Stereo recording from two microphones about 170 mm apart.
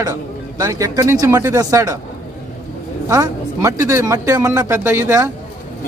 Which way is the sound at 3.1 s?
20° right (ahead or behind).